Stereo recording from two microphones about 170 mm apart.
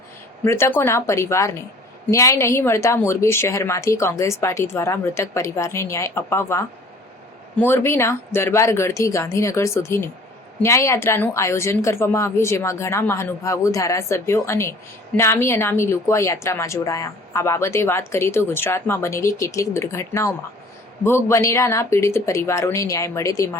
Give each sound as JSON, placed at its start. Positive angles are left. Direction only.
{"t": 0.4, "sound": "speech", "side_deg": 15}